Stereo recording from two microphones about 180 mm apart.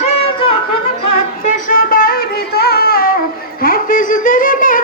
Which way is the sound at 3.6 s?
50° left (ahead or behind).